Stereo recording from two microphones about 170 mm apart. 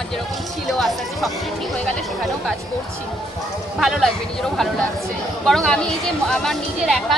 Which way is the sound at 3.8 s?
Centre (ahead or behind).